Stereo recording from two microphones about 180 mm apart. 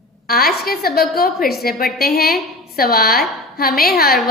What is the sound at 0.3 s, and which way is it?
A woman's voice, 55° left (ahead or behind).